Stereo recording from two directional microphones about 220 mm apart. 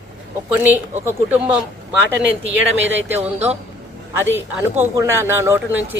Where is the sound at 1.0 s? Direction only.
10° right (ahead or behind).